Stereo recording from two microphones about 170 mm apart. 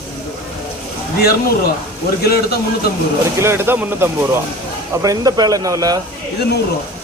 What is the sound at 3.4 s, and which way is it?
Speech, 15° right (ahead or behind).